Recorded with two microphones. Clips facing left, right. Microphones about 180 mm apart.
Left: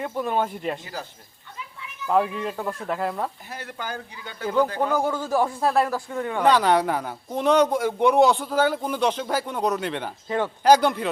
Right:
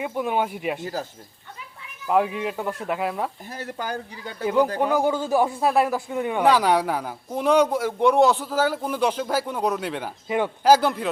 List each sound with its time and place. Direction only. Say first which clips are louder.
0.0 s speech: right 1 dB; 10° right (ahead or behind)
2.0 s speech: right 1 dB; 5° right (ahead or behind)
3.5 s speech: right 3 dB; 40° right (ahead or behind)
4.4 s speech: right 2 dB; 15° right (ahead or behind)